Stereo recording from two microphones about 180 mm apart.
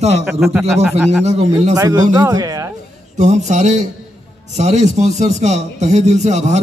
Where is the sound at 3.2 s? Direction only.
40° right (ahead or behind).